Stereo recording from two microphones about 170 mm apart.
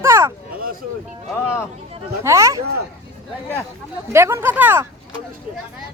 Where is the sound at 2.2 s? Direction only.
20° right (ahead or behind).